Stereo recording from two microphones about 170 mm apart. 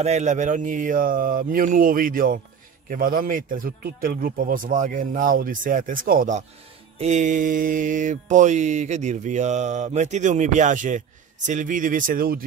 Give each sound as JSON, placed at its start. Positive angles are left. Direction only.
{"t": 0.0, "sound": "mantra", "side_deg": -40}